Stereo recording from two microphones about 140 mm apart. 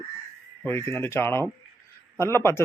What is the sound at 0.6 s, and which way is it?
Speech, 15° left (ahead or behind).